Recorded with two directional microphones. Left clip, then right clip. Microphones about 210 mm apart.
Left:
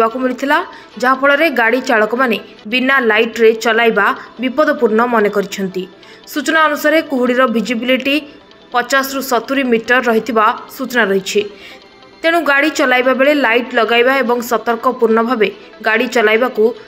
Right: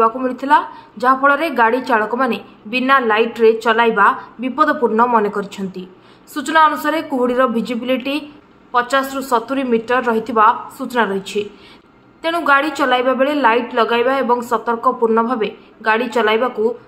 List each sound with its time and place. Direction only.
0.0 s speech: 15° left (ahead or behind)